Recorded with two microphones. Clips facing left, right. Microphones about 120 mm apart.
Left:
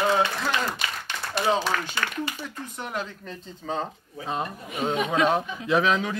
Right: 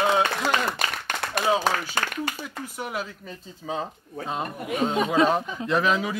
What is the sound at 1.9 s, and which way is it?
Speech, 45° right (ahead or behind).